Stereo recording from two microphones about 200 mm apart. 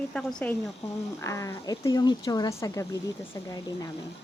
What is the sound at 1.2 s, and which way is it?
Speech, 15° left (ahead or behind).